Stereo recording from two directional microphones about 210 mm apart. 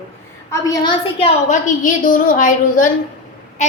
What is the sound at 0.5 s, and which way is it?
A woman's voice, 15° left (ahead or behind).